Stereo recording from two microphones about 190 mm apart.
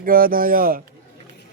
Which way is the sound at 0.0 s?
50° right (ahead or behind).